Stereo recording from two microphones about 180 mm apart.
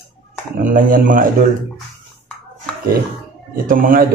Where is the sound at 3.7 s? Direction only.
50° right (ahead or behind).